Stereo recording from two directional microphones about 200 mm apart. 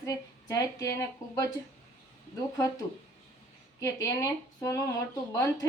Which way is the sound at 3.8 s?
15° left (ahead or behind).